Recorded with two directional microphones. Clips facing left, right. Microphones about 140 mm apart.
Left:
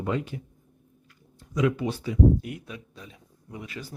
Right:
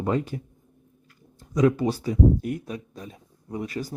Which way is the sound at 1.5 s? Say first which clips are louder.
Right 4 dB; 40° right (ahead or behind).